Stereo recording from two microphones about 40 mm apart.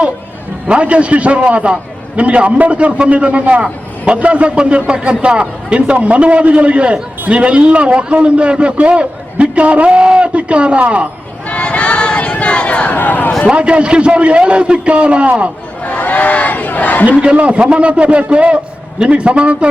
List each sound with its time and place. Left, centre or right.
0.7 s a man's voice: right
11.4 s a sound: left
13.5 s a man's voice: right
15.8 s crowd: left
17.3 s a man's voice: right